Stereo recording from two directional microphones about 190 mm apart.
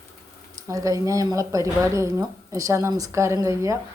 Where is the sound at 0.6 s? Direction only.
15° right (ahead or behind).